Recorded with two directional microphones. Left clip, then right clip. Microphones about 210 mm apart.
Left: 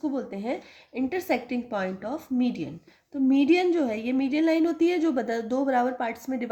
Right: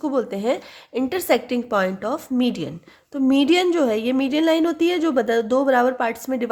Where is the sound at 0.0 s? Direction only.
35° right (ahead or behind).